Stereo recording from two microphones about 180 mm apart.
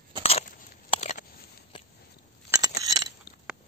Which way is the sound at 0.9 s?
40° left (ahead or behind).